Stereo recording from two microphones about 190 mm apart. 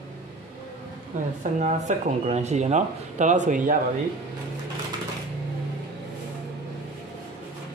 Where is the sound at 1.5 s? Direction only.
40° right (ahead or behind).